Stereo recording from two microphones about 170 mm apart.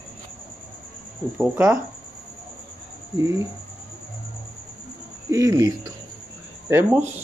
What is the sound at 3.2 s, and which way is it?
Speech, 20° right (ahead or behind).